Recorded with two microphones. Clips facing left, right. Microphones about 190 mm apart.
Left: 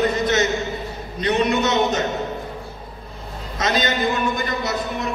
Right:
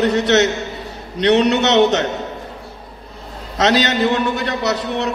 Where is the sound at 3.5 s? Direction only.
75° right (ahead or behind).